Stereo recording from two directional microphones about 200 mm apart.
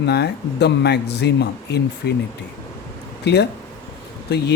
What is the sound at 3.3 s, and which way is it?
Speech, 55° left (ahead or behind).